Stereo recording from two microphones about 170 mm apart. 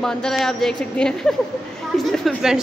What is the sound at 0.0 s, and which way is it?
A woman's voice, 5° left (ahead or behind).